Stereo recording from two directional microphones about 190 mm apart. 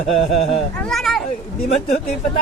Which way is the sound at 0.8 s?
Centre (ahead or behind).